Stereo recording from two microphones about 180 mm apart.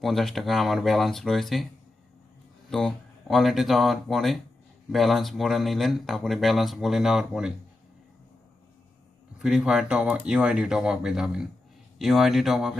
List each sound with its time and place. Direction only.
0.0 s speech: centre (ahead or behind)
2.6 s speech: centre (ahead or behind)
9.4 s speech: 5° right (ahead or behind)